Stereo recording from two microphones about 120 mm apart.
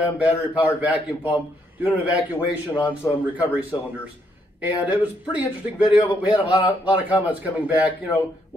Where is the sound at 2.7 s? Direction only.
15° left (ahead or behind).